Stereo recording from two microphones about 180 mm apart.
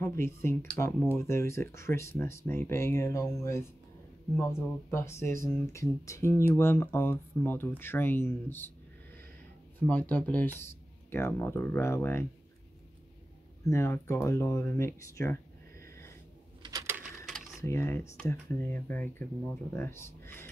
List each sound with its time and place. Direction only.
0.0 s speech: 15° left (ahead or behind)
9.8 s speech: 10° left (ahead or behind)
13.7 s speech: 15° left (ahead or behind)
16.6 s a sound: 15° right (ahead or behind)
17.3 s computer keyboard: centre (ahead or behind)
17.6 s speech: 15° left (ahead or behind)